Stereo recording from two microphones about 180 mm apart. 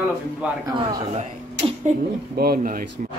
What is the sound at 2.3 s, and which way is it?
Speech, 55° right (ahead or behind).